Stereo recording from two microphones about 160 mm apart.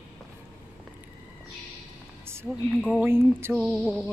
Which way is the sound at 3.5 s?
Centre (ahead or behind).